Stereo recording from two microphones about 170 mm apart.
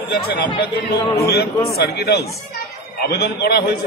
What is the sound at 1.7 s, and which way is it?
A man's voice, 70° left (ahead or behind).